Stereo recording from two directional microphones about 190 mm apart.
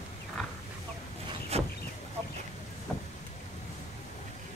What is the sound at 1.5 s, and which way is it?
Chicken, 35° right (ahead or behind).